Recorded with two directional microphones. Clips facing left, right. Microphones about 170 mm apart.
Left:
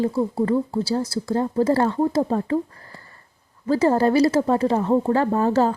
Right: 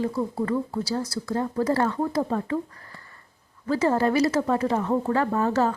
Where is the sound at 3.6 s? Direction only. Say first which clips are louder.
Left 4 dB; 30° left (ahead or behind).